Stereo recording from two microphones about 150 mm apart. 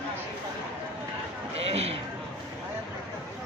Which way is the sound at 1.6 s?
40° right (ahead or behind).